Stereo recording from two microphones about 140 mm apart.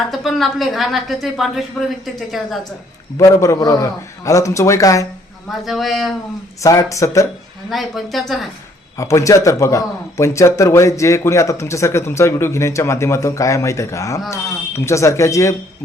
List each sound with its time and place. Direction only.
0.1 s a woman's voice: centre (ahead or behind)
3.2 s a man's voice: 25° left (ahead or behind)
5.5 s a woman's voice: centre (ahead or behind)
6.6 s a man's voice: 25° left (ahead or behind)
7.7 s a woman's voice: centre (ahead or behind)
9.0 s a man's voice: 20° left (ahead or behind)